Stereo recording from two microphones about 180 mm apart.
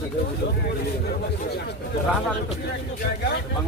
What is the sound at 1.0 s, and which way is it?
Speech, 65° left (ahead or behind).